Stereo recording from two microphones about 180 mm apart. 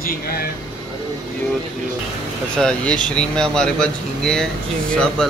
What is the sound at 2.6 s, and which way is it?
Speech, 5° left (ahead or behind).